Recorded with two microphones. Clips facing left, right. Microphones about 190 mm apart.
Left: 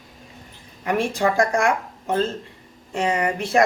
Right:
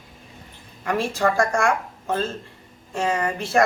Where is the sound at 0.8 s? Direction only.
15° left (ahead or behind).